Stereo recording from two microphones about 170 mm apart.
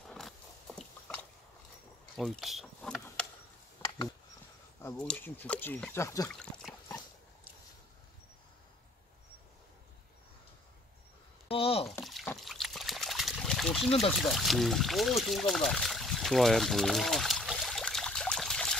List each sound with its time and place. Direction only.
0.1 s biting: 5° left (ahead or behind)
2.1 s a sound: centre (ahead or behind)
3.8 s a sound: 30° left (ahead or behind)
4.9 s speech: 5° left (ahead or behind)
6.2 s trickle: 5° left (ahead or behind)
11.4 s a sound: 35° left (ahead or behind)
12.0 s water: centre (ahead or behind)
12.4 s trickle: centre (ahead or behind)
14.1 s speech: centre (ahead or behind)